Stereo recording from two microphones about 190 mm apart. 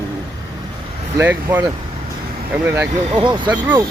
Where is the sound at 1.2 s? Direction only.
10° right (ahead or behind).